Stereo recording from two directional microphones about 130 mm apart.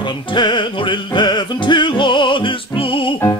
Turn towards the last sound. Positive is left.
turn(degrees=40)  # may be behind; listen again after turning